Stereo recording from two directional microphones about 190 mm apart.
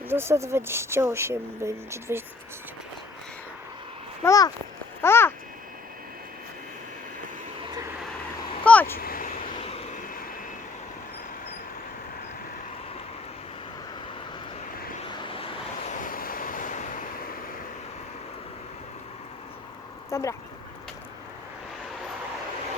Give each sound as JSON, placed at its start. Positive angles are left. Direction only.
{"t": 0.1, "sound": "speech", "side_deg": -15}
{"t": 4.2, "sound": "a child's voice", "side_deg": 15}
{"t": 8.6, "sound": "vehicle", "side_deg": 10}
{"t": 9.0, "sound": "vehicle", "side_deg": 50}
{"t": 9.6, "sound": "vehicle", "side_deg": 30}
{"t": 15.1, "sound": "vehicle", "side_deg": 30}
{"t": 15.9, "sound": "waves", "side_deg": 45}
{"t": 20.1, "sound": "a sound", "side_deg": 15}